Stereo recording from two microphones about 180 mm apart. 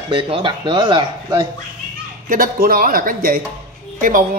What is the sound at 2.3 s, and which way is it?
A man's voice, 55° right (ahead or behind).